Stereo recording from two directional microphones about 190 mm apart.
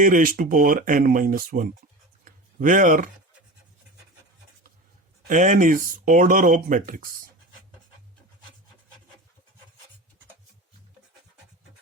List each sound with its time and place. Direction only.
0.0 s speech: 45° right (ahead or behind)
2.2 s a sound: 45° right (ahead or behind)
5.3 s speech: 40° right (ahead or behind)